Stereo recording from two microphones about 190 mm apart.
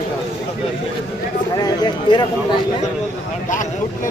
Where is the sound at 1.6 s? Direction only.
20° left (ahead or behind).